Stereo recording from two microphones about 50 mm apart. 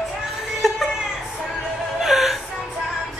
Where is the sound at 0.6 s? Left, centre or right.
Centre.